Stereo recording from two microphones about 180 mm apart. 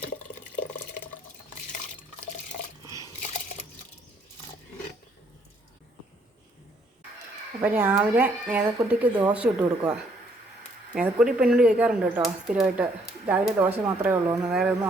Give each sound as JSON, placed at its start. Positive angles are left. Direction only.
{"t": 7.6, "sound": "speech", "side_deg": -10}